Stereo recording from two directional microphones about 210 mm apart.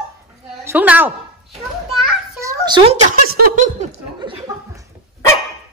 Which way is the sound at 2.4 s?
15° right (ahead or behind).